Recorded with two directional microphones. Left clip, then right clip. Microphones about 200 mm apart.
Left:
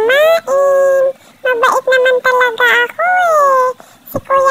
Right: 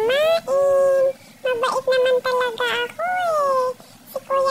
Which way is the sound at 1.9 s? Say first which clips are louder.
Left 8 dB; 20° left (ahead or behind).